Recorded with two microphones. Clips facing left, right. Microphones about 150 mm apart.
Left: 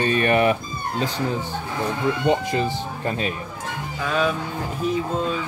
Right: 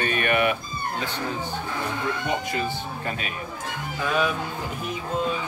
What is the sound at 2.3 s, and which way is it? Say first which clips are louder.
Speech: left 8 dB; 25° left (ahead or behind).